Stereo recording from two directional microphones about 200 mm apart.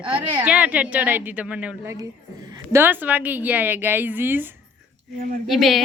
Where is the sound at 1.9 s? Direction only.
20° right (ahead or behind).